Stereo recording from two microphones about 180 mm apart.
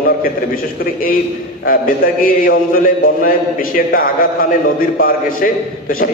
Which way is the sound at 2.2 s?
50° left (ahead or behind).